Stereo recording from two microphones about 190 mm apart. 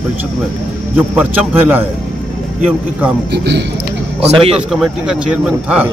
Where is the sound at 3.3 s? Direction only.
65° right (ahead or behind).